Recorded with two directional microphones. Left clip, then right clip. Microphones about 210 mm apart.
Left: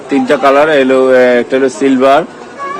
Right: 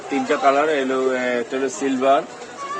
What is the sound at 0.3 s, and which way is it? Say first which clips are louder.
A man's voice: left 9 dB; 45° left (ahead or behind).